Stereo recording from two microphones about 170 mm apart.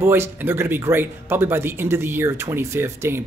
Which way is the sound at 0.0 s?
15° right (ahead or behind).